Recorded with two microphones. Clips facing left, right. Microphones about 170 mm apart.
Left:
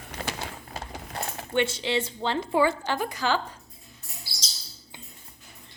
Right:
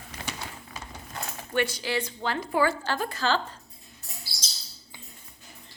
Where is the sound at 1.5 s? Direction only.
25° left (ahead or behind).